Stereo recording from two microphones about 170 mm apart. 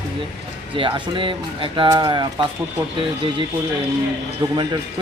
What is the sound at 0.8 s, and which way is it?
Speech, 30° right (ahead or behind).